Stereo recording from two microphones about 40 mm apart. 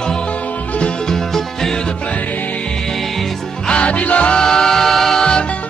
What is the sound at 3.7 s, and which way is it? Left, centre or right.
Music, left.